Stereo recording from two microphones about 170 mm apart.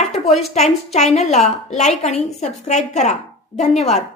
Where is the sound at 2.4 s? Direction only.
40° left (ahead or behind).